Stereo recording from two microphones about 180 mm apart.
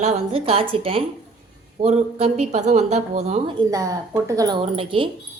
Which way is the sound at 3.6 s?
20° right (ahead or behind).